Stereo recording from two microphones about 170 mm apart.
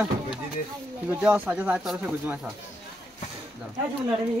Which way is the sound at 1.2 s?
10° right (ahead or behind).